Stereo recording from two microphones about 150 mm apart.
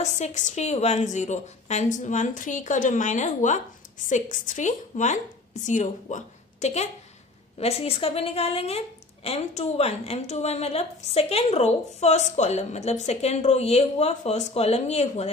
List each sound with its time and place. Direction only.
0.0 s a woman's voice: 50° left (ahead or behind)